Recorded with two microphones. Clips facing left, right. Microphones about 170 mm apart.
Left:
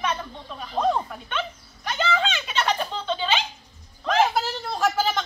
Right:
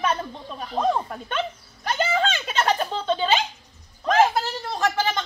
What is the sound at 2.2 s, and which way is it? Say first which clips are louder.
Giggle: right 2 dB; 45° right (ahead or behind).